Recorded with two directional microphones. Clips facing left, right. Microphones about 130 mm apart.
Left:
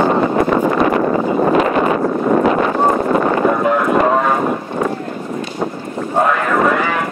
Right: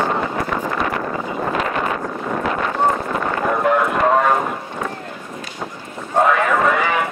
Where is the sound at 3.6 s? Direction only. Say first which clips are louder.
Left 3 dB; centre (ahead or behind).